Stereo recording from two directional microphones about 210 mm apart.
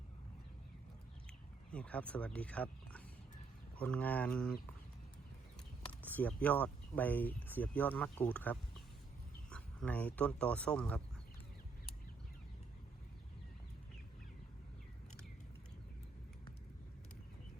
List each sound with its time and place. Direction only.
1.7 s speech: 5° left (ahead or behind)
6.0 s speech: 10° left (ahead or behind)